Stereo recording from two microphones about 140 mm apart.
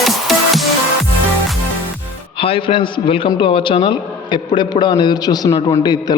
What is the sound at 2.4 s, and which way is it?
A man's voice, 40° left (ahead or behind).